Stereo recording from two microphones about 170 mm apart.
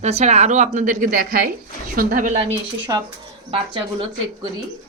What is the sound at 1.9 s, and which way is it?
Speech, 50° right (ahead or behind).